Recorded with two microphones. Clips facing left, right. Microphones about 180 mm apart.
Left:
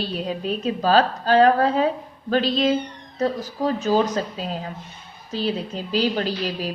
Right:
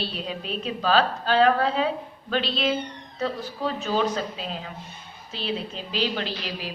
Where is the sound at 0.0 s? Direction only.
45° left (ahead or behind).